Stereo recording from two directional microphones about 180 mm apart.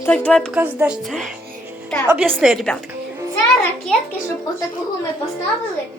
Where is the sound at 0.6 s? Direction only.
5° right (ahead or behind).